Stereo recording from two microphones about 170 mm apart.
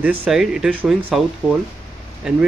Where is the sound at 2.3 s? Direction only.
5° right (ahead or behind).